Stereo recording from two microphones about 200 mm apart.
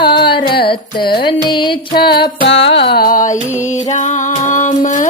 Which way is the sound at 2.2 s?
60° left (ahead or behind).